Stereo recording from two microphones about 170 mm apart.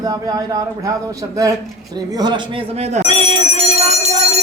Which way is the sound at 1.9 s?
25° right (ahead or behind).